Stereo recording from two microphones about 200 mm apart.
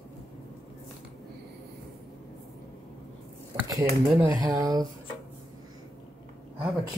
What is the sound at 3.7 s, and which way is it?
Speech, 15° right (ahead or behind).